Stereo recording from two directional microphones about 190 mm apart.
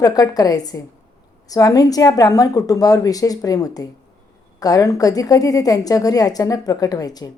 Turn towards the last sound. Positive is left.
turn(degrees=20)  # may be behind; listen again after turning